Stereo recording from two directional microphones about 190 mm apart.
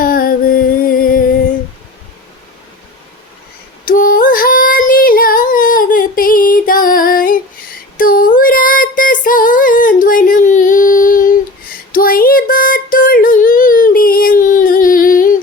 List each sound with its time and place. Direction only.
0.0 s music: 50° left (ahead or behind)
3.8 s a sound: 50° left (ahead or behind)
9.2 s female singing: 45° left (ahead or behind)
11.9 s child singing: 50° left (ahead or behind)